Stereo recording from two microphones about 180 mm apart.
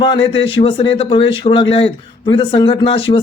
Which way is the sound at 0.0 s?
30° left (ahead or behind).